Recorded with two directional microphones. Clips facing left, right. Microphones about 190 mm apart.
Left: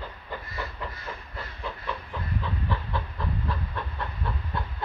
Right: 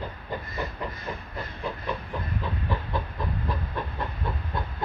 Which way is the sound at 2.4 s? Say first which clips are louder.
Right 1 dB; 15° right (ahead or behind).